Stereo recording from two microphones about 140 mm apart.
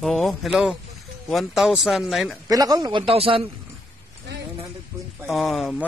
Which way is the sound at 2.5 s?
25° right (ahead or behind).